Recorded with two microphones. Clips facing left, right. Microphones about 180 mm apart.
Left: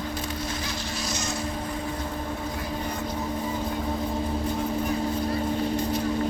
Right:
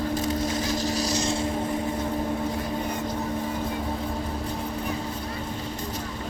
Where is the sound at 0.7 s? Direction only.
40° right (ahead or behind).